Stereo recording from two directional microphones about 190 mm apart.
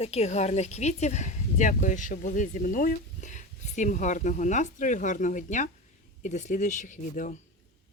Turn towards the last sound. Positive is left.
turn(degrees=40)  # may be behind; listen again after turning